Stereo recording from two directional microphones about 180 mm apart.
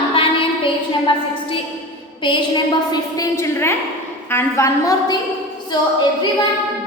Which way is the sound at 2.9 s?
20° left (ahead or behind).